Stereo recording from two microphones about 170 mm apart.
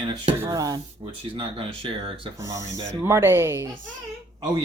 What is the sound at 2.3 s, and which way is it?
Speech, 20° right (ahead or behind).